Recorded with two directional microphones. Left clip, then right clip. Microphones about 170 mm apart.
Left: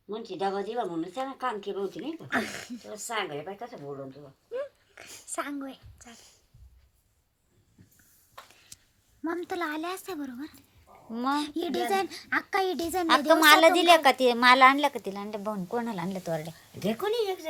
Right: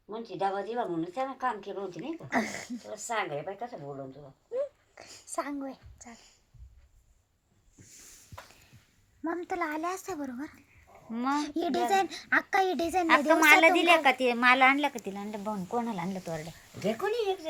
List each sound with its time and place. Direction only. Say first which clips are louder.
0.3 s speech: even; 45° left (ahead or behind)
2.4 s a child's voice: even; 10° left (ahead or behind)
2.8 s speech: even; 35° left (ahead or behind)
4.5 s a sound: right 2 dB; 10° left (ahead or behind)
9.2 s a child's voice: left 1 dB; 5° left (ahead or behind)
10.2 s a woman's voice: even; 25° right (ahead or behind)
11.3 s a child's voice: left 1 dB; centre (ahead or behind)
11.9 s a woman's voice: right 2 dB; 25° right (ahead or behind)
13.1 s a child's voice: left 2 dB; 10° left (ahead or behind); by 17.3 s 30° left (ahead or behind)